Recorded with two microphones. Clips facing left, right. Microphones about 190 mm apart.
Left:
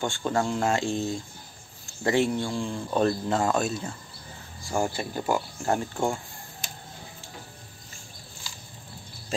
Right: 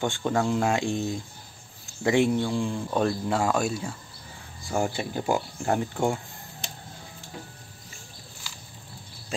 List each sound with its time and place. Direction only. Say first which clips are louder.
0.0 s speech: right 1 dB; 15° right (ahead or behind)